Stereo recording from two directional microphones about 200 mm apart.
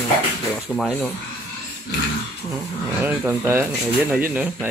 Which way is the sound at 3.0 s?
10° right (ahead or behind).